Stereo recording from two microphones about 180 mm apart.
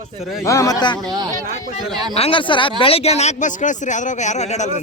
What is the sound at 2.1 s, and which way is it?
Speech, 30° left (ahead or behind).